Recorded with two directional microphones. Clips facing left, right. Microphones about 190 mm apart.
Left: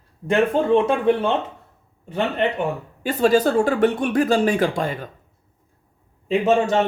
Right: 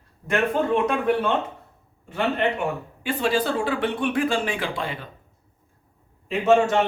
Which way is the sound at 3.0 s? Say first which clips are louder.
Left 6 dB; 40° left (ahead or behind).